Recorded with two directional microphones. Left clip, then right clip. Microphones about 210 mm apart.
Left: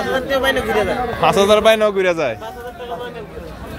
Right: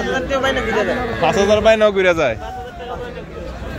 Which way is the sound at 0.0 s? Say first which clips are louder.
Left 1 dB; 35° left (ahead or behind).